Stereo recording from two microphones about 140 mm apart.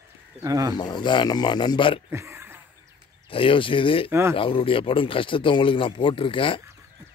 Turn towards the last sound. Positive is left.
turn(degrees=40)  # may be behind; listen again after turning